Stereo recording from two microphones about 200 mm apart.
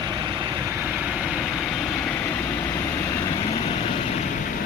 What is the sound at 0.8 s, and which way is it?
Vehicle, 10° right (ahead or behind).